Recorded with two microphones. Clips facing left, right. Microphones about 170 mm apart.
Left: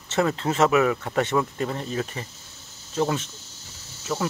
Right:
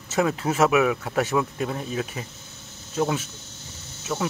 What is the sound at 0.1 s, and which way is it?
Speech, 5° right (ahead or behind).